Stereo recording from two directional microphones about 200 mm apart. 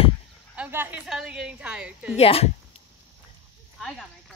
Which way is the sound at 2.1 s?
30° left (ahead or behind).